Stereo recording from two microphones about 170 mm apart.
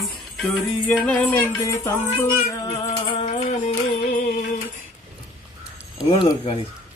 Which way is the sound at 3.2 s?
40° left (ahead or behind).